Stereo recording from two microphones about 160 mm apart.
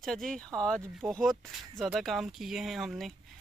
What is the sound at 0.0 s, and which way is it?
Speech, 5° left (ahead or behind).